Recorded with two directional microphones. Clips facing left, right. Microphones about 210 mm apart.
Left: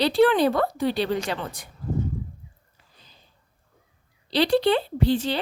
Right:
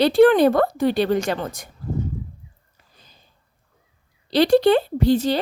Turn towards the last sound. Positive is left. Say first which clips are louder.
# right 5 dB
turn(degrees=-40)  # may be behind; listen again after turning